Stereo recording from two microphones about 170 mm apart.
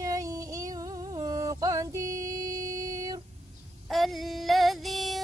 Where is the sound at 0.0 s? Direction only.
20° right (ahead or behind).